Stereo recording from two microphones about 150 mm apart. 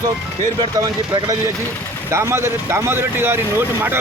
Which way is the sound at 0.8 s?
25° right (ahead or behind).